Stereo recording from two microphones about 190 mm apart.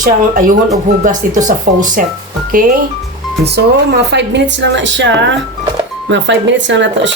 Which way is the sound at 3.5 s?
60° right (ahead or behind).